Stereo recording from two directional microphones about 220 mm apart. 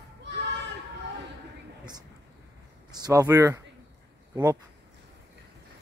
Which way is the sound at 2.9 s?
15° right (ahead or behind).